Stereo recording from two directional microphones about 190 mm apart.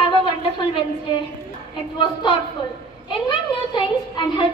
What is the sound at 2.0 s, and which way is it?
A woman's voice, 25° left (ahead or behind).